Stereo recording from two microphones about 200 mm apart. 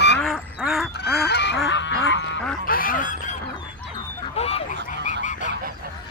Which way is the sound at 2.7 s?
45° left (ahead or behind).